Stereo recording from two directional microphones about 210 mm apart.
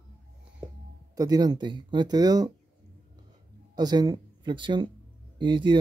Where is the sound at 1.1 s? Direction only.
20° right (ahead or behind).